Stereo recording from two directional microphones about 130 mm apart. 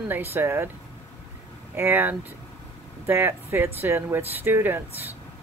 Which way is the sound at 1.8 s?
15° right (ahead or behind).